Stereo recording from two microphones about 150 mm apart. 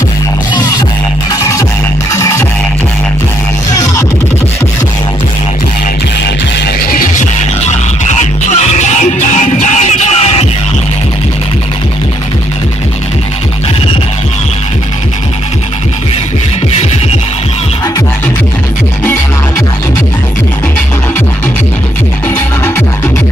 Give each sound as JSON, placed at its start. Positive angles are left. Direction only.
{"t": 0.6, "sound": "music", "side_deg": 25}
{"t": 2.1, "sound": "music", "side_deg": 20}
{"t": 6.9, "sound": "music", "side_deg": 70}
{"t": 8.2, "sound": "music", "side_deg": 50}